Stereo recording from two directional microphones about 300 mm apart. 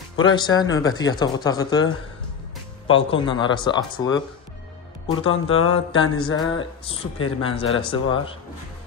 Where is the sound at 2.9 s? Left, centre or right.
Centre.